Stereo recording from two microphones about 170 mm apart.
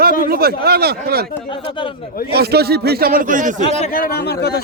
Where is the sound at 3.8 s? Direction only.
55° left (ahead or behind).